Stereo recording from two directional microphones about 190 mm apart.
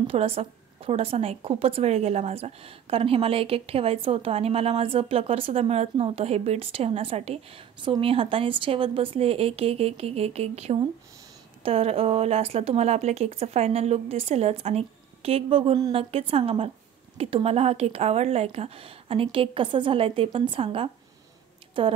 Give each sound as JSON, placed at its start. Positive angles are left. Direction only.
{"t": 0.0, "sound": "a woman's voice", "side_deg": -30}